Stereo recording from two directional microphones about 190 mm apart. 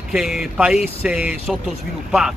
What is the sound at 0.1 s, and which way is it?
Speech, centre (ahead or behind).